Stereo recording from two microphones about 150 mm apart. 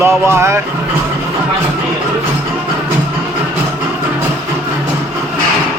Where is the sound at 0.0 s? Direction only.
15° right (ahead or behind).